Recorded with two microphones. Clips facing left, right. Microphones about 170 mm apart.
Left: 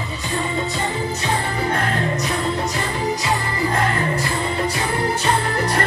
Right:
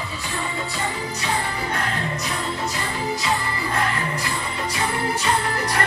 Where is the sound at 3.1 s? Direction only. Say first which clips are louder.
Left 2 dB; 20° left (ahead or behind).